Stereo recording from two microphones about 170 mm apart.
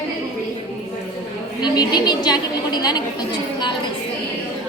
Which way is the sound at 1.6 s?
25° left (ahead or behind).